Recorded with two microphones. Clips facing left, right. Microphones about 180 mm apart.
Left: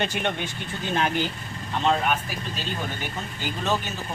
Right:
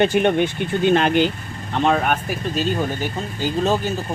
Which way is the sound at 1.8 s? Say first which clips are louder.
Right 4 dB; 55° right (ahead or behind).